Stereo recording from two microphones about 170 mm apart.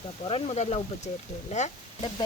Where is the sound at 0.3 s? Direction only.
35° left (ahead or behind).